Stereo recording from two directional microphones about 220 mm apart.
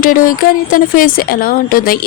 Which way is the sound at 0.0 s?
40° left (ahead or behind).